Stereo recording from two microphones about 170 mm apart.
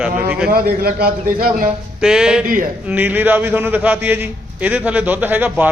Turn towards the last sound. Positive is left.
turn(degrees=-10)  # may be behind; listen again after turning